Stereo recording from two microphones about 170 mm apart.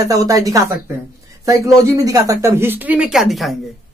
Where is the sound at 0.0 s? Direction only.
20° right (ahead or behind).